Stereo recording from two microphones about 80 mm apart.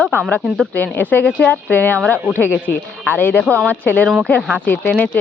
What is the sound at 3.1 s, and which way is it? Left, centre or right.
Speech, left.